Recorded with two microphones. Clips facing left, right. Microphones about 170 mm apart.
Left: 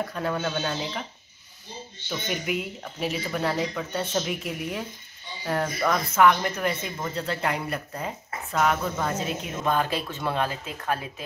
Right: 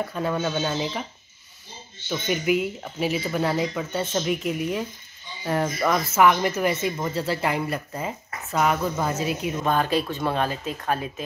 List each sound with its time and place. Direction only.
0.0 s speech: centre (ahead or behind)
2.0 s speech: centre (ahead or behind)